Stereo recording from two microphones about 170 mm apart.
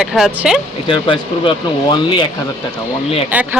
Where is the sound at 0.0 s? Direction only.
Centre (ahead or behind).